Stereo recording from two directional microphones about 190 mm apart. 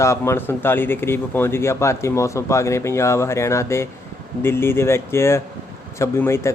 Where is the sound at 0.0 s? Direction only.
15° left (ahead or behind).